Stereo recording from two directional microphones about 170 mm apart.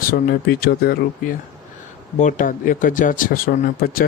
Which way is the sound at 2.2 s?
50° left (ahead or behind).